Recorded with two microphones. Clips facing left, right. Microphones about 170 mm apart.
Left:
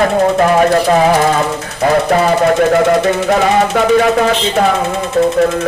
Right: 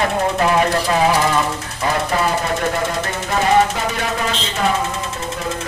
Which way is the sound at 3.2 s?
65° left (ahead or behind).